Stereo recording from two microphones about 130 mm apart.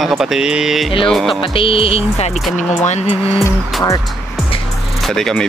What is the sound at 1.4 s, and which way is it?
Music, 45° left (ahead or behind).